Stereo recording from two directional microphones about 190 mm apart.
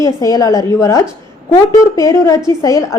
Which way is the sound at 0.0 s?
20° left (ahead or behind).